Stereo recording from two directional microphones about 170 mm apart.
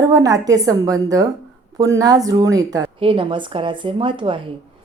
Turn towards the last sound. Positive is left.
turn(degrees=-30)  # may be behind; listen again after turning